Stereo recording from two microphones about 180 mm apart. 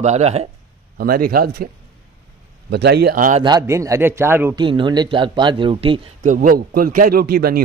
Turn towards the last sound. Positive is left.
turn(degrees=-60)  # may be behind; listen again after turning